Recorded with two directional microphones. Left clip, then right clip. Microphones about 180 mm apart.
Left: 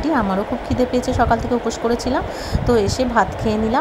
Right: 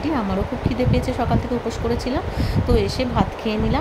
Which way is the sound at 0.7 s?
20° left (ahead or behind).